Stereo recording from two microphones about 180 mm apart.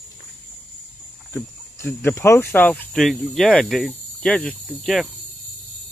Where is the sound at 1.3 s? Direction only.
10° left (ahead or behind).